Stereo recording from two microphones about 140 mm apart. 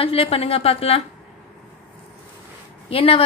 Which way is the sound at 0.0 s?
45° left (ahead or behind).